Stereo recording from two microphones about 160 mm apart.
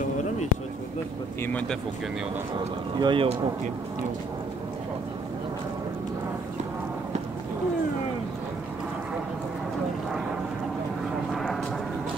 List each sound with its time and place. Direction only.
1.4 s speech: 10° left (ahead or behind)
2.5 s speech: 30° right (ahead or behind)